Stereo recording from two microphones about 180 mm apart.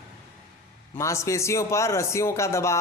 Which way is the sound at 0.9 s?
15° left (ahead or behind).